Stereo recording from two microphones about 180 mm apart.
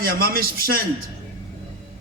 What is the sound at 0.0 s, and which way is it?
Speech, 55° right (ahead or behind).